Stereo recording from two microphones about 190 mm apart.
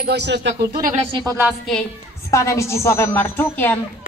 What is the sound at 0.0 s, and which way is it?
Speech, 65° right (ahead or behind).